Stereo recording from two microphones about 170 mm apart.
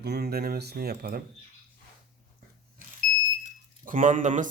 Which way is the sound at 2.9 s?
50° right (ahead or behind).